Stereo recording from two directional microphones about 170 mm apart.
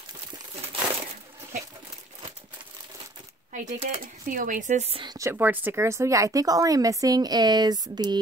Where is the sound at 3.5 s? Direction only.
50° right (ahead or behind); by 5.2 s 30° right (ahead or behind).